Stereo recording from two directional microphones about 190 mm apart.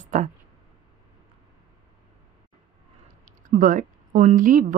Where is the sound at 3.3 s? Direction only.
40° right (ahead or behind).